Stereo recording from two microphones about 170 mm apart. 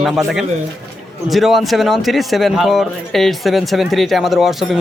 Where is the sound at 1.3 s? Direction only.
Centre (ahead or behind).